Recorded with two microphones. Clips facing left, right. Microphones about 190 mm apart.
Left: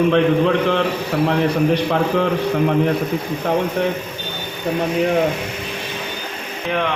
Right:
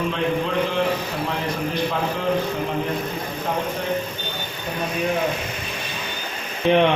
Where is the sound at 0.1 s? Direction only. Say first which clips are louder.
Left 8 dB; 65° left (ahead or behind).